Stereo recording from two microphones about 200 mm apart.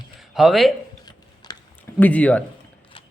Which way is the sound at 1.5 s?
20° left (ahead or behind).